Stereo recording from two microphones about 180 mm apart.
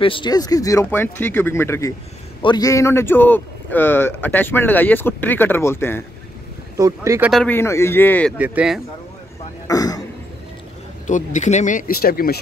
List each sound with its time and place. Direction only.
0.0 s a man's voice: 25° left (ahead or behind)
6.8 s speech: 15° right (ahead or behind)
7.2 s a man's voice: 5° left (ahead or behind)
8.4 s speech: 5° right (ahead or behind)
9.7 s speech: 20° left (ahead or behind)
11.1 s speech: 45° left (ahead or behind)